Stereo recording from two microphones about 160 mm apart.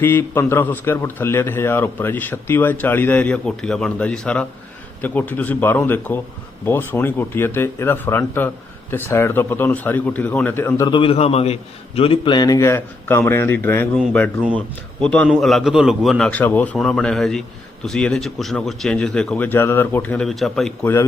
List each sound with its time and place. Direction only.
0.0 s a man's voice: 15° left (ahead or behind)
10.8 s a man's voice: 35° left (ahead or behind); by 20.7 s centre (ahead or behind)